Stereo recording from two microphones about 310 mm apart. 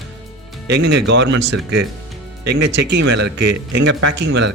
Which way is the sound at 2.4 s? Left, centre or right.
Right.